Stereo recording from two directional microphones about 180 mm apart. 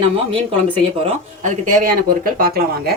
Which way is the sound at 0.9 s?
35° right (ahead or behind).